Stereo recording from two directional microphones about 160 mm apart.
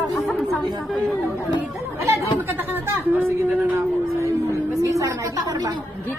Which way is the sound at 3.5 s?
10° right (ahead or behind).